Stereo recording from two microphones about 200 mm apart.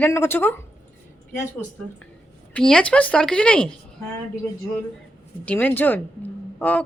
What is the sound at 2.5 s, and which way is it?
Speech, 5° left (ahead or behind).